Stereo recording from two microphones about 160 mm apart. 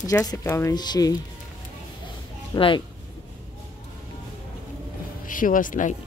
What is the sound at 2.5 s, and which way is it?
Speech, 35° left (ahead or behind).